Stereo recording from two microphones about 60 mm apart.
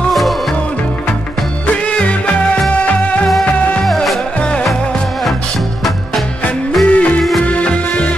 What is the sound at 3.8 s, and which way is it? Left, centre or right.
Music, centre.